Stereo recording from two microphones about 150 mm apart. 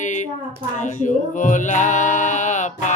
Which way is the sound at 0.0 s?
55° left (ahead or behind).